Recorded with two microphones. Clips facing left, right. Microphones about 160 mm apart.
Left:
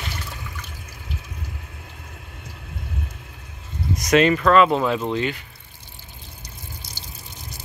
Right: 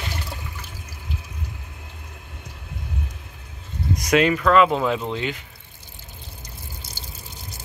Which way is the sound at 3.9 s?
10° right (ahead or behind).